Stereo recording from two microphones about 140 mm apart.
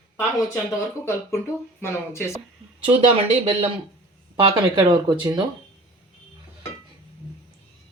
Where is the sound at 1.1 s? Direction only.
20° left (ahead or behind).